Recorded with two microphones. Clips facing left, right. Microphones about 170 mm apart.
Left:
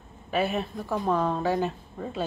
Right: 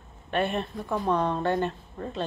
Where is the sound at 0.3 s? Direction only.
5° left (ahead or behind).